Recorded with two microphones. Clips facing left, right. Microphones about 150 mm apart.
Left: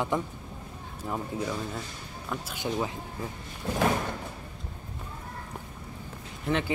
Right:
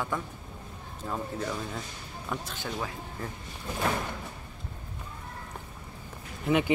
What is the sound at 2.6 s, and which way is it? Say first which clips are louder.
Speech: left 5 dB; 20° left (ahead or behind).